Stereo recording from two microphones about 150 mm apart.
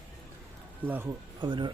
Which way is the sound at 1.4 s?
30° right (ahead or behind).